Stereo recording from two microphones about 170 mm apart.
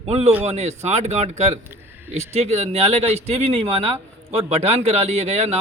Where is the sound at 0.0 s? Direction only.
35° right (ahead or behind).